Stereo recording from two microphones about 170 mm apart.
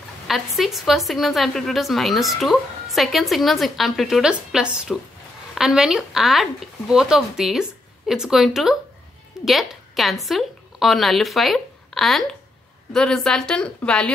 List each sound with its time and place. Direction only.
0.3 s a woman's voice: centre (ahead or behind)